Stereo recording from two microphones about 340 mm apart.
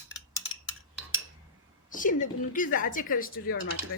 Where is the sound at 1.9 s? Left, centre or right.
Left.